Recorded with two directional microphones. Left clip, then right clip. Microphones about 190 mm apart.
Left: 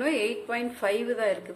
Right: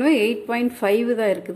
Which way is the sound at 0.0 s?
35° right (ahead or behind).